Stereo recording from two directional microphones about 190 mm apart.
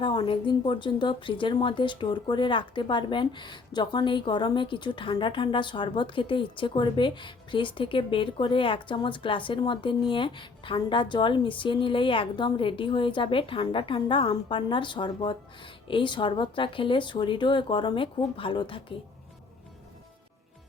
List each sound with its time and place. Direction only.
0.0 s a woman's voice: 25° left (ahead or behind)